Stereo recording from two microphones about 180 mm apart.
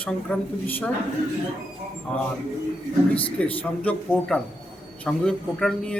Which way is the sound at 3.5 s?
10° left (ahead or behind).